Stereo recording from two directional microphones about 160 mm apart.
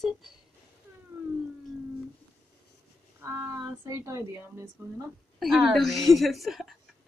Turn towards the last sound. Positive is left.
turn(degrees=0)  # may be behind; listen again after turning